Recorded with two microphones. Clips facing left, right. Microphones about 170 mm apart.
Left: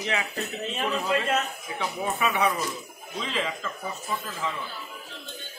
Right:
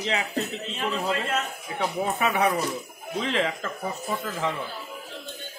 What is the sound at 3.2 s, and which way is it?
Speech, 60° right (ahead or behind).